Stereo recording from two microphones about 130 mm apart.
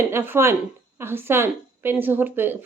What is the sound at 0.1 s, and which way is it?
A woman's voice, 20° right (ahead or behind).